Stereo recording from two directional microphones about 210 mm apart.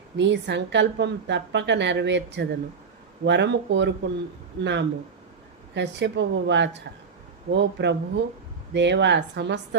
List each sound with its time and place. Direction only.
0.2 s a woman's voice: 55° right (ahead or behind)